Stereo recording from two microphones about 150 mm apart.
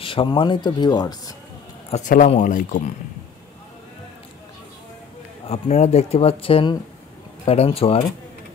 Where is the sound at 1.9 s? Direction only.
60° left (ahead or behind).